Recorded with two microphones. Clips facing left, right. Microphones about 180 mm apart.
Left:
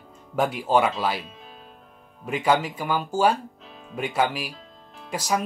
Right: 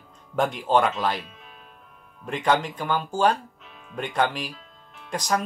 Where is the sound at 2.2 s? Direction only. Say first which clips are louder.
Left 1 dB; 5° left (ahead or behind).